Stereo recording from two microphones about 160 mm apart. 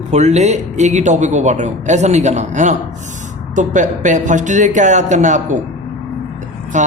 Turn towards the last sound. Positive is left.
turn(degrees=-50)  # may be behind; listen again after turning